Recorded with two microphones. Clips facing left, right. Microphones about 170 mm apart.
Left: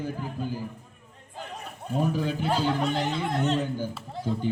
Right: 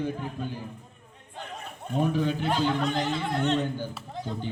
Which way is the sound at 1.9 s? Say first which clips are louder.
Right 1 dB; 5° left (ahead or behind).